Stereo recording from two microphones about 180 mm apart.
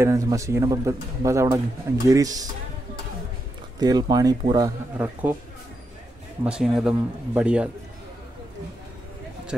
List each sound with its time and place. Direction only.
0.0 s a man's voice: 15° right (ahead or behind)
3.8 s speech: 20° right (ahead or behind)
6.4 s a man's voice: 5° right (ahead or behind)